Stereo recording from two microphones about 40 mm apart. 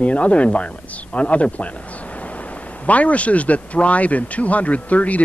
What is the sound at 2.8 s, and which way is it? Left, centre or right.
Speech, left.